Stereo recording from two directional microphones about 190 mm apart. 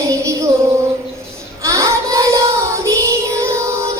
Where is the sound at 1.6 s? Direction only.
15° right (ahead or behind).